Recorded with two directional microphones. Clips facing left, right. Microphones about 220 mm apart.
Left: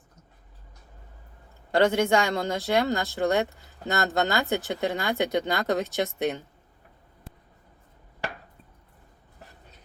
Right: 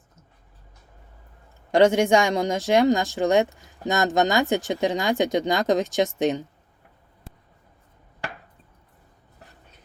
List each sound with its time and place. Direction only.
1.7 s speech: 15° right (ahead or behind)